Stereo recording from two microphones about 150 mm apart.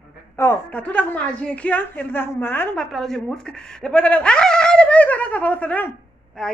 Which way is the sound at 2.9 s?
5° left (ahead or behind).